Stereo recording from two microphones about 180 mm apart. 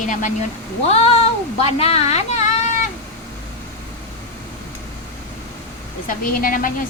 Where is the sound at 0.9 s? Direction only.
35° left (ahead or behind).